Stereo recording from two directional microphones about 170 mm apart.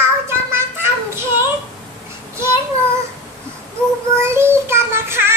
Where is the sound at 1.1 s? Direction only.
15° right (ahead or behind).